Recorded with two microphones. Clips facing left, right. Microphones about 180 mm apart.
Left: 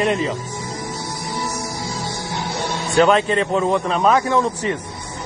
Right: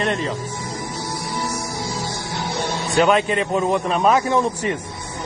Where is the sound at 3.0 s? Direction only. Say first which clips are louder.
Left 2 dB; 15° right (ahead or behind).